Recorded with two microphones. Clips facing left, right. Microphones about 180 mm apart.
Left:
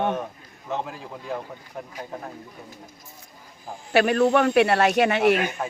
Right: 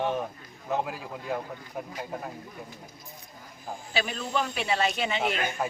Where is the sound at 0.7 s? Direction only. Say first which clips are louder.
Even; 5° right (ahead or behind).